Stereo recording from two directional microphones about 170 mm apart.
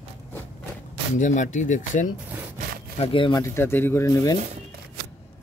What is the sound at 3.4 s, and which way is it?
Speech, 15° left (ahead or behind).